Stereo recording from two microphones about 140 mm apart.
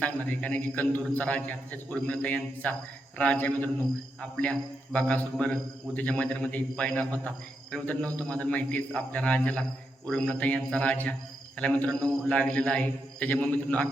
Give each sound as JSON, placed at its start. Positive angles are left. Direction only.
{"t": 0.0, "sound": "a man's voice", "side_deg": 10}